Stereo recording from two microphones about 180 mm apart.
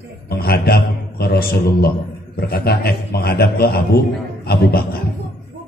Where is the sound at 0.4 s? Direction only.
60° left (ahead or behind).